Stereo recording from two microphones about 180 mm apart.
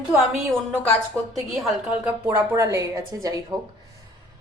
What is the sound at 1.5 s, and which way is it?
A woman's voice, 5° right (ahead or behind).